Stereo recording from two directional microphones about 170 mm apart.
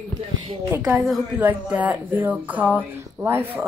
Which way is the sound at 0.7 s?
5° right (ahead or behind).